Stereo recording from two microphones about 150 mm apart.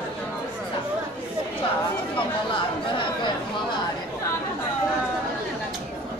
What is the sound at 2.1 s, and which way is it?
Chatter, 35° left (ahead or behind).